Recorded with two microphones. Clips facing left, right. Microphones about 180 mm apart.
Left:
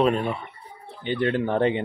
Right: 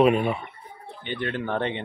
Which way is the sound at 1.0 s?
35° left (ahead or behind).